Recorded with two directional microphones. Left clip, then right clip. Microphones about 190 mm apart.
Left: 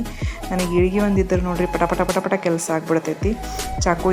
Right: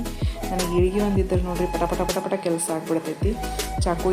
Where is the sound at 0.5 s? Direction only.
Centre (ahead or behind).